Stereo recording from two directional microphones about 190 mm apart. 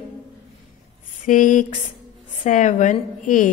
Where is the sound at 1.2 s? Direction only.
40° left (ahead or behind).